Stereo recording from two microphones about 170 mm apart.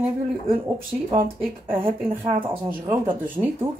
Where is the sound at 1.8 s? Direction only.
30° right (ahead or behind).